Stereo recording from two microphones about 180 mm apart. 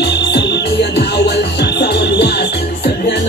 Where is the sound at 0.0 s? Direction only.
70° left (ahead or behind).